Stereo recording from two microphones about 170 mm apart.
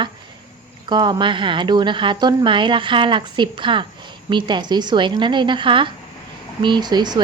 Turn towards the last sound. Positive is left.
turn(degrees=-25)  # may be behind; listen again after turning